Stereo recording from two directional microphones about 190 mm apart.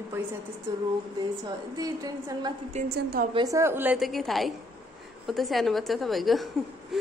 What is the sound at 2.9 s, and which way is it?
Speech, 50° right (ahead or behind).